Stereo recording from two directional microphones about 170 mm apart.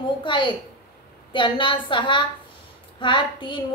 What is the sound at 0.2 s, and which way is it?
A woman's voice, 30° left (ahead or behind).